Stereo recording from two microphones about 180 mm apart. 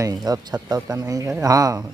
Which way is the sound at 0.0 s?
20° right (ahead or behind).